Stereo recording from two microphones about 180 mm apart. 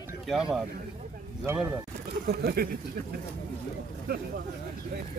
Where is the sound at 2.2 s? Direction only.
60° right (ahead or behind).